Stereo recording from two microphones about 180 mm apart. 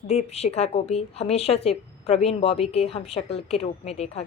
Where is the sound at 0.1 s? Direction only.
35° left (ahead or behind).